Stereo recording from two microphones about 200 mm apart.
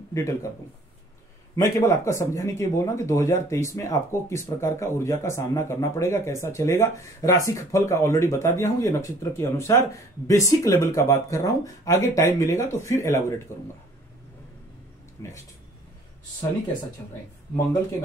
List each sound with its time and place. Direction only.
0.1 s speech: 15° left (ahead or behind)
1.5 s speech: 15° left (ahead or behind)
15.2 s speech: 15° left (ahead or behind)